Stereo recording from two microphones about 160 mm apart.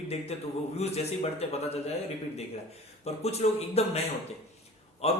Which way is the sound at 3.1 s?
40° left (ahead or behind).